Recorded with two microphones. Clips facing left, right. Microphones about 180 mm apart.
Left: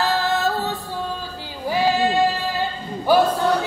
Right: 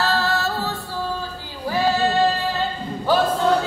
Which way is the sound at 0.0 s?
15° left (ahead or behind).